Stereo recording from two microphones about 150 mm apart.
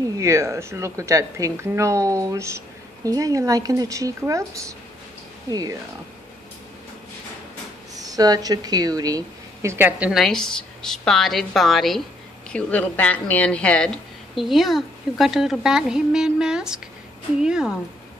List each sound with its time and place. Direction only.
0.2 s a woman's voice: 20° right (ahead or behind)
5.5 s a woman's voice: 25° right (ahead or behind)
7.9 s speech: 25° right (ahead or behind); by 10.2 s 10° right (ahead or behind)
10.2 s a woman's voice: 5° left (ahead or behind)